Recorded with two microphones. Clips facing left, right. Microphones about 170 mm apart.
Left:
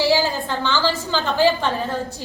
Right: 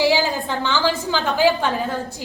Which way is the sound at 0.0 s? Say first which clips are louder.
Even; 15° right (ahead or behind).